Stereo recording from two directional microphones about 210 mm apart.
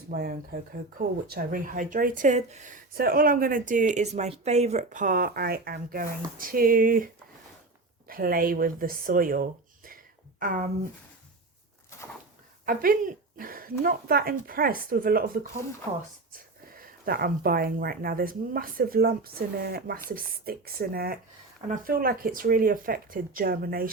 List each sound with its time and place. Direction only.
0.1 s speech: 40° right (ahead or behind)
12.6 s speech: 40° right (ahead or behind)